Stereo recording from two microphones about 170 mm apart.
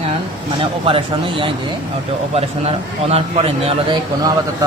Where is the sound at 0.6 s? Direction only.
30° right (ahead or behind).